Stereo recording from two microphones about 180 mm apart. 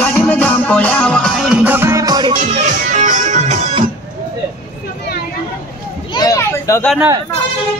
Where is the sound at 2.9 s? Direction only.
45° right (ahead or behind).